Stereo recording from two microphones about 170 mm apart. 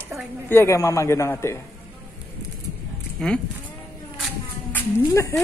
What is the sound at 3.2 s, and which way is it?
Speech, 5° left (ahead or behind).